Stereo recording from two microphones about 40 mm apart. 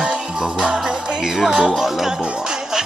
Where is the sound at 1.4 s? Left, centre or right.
Centre.